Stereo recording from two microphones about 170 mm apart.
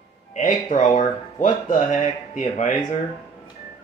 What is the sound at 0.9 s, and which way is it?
Speech, 45° left (ahead or behind).